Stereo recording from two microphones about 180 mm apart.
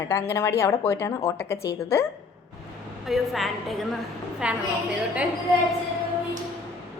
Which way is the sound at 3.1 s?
Centre (ahead or behind).